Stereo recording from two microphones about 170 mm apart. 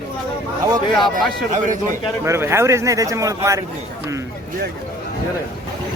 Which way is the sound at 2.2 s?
15° right (ahead or behind).